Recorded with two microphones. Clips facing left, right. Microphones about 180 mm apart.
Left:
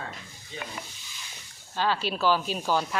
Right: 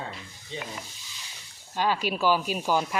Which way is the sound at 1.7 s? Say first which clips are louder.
Right 1 dB; 15° right (ahead or behind).